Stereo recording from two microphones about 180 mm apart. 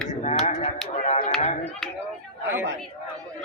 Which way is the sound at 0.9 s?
40° left (ahead or behind).